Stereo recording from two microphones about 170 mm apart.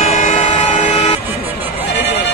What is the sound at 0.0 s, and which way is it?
Train, 45° left (ahead or behind).